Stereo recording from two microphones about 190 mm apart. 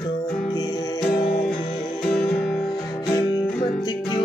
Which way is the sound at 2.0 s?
5° left (ahead or behind).